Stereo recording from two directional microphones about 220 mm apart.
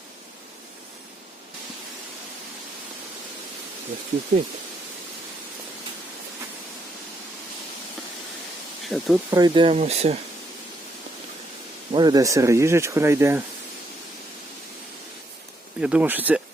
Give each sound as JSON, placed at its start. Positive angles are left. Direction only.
{"t": 8.8, "sound": "speech", "side_deg": 0}
{"t": 9.3, "sound": "speech", "side_deg": -20}
{"t": 11.9, "sound": "speech", "side_deg": -20}
{"t": 15.8, "sound": "speech", "side_deg": -5}